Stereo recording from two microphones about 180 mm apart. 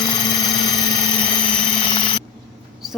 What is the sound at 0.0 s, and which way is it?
Helicopter, 25° left (ahead or behind).